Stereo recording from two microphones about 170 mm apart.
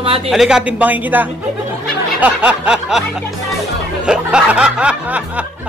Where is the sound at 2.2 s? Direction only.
5° right (ahead or behind).